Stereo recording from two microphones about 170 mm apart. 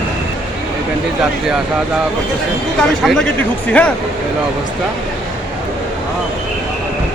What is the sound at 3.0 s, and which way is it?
Speech, 5° left (ahead or behind).